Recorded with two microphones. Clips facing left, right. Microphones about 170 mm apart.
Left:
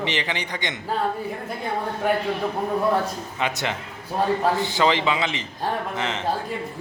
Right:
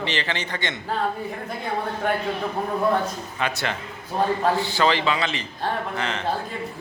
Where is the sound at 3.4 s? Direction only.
20° left (ahead or behind).